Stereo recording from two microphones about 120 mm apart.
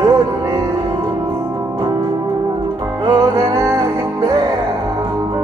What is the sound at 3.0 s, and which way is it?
Music, 35° right (ahead or behind).